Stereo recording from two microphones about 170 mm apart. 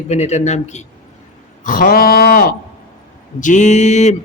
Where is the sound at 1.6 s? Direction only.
55° left (ahead or behind).